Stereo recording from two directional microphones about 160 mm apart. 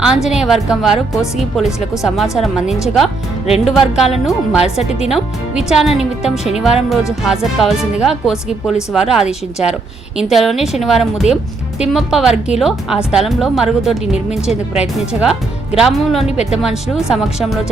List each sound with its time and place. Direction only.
0.0 s a woman's voice: 5° right (ahead or behind)
3.4 s speech: 40° left (ahead or behind)
3.7 s a woman's voice: centre (ahead or behind)